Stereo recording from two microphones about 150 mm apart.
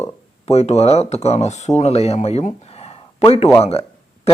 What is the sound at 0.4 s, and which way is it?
A man's voice, 45° left (ahead or behind).